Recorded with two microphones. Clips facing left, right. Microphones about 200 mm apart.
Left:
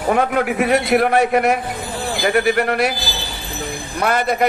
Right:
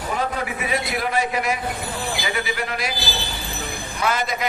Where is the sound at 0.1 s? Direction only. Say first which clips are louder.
Left 9 dB; 65° left (ahead or behind).